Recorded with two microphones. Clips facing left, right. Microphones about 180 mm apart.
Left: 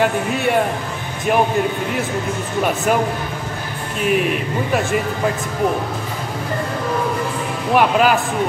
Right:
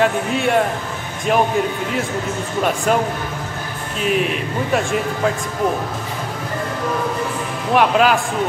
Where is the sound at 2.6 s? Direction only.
5° left (ahead or behind).